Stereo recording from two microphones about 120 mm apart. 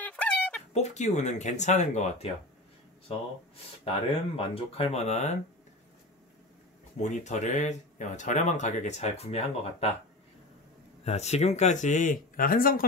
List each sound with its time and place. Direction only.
0.0 s a sound: 10° left (ahead or behind)
0.7 s speech: 70° left (ahead or behind)
3.8 s speech: 55° left (ahead or behind); by 5.4 s 70° left (ahead or behind)
7.0 s speech: 75° left (ahead or behind); by 9.9 s 60° left (ahead or behind)
11.1 s speech: 65° left (ahead or behind); by 12.2 s 90° left